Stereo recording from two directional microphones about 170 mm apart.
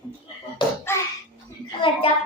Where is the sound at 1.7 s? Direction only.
30° left (ahead or behind).